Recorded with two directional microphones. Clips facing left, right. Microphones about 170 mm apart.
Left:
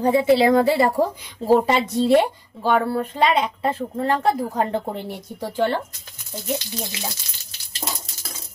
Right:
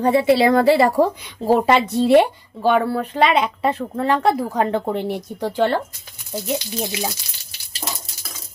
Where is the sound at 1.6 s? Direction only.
70° right (ahead or behind).